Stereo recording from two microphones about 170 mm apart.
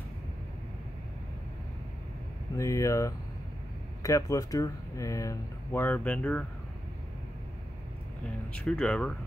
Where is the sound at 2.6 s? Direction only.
20° left (ahead or behind).